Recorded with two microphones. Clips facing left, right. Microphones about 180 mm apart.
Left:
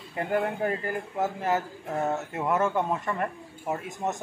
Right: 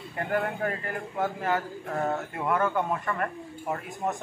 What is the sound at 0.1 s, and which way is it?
Speech, 15° left (ahead or behind).